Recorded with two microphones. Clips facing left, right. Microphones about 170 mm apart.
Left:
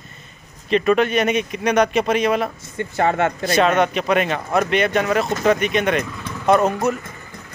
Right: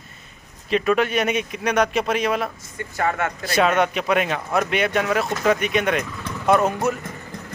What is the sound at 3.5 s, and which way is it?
A man's voice, 5° right (ahead or behind).